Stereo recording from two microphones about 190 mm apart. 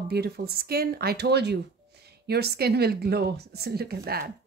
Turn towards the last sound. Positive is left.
turn(degrees=-55)  # may be behind; listen again after turning